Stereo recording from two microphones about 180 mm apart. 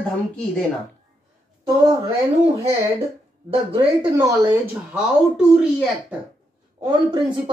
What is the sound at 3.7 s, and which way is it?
Speech, 25° right (ahead or behind).